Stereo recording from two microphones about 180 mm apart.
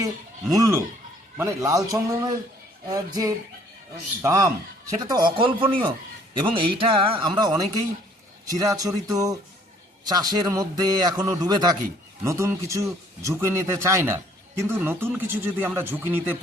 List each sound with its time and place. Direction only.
0.5 s a man's voice: 20° right (ahead or behind)